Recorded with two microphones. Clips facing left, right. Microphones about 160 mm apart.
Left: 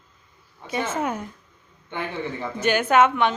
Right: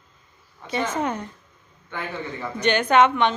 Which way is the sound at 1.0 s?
10° left (ahead or behind).